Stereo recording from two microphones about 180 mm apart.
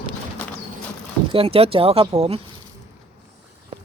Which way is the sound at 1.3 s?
30° right (ahead or behind).